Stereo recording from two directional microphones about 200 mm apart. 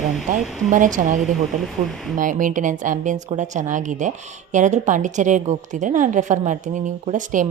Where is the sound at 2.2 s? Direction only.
40° right (ahead or behind).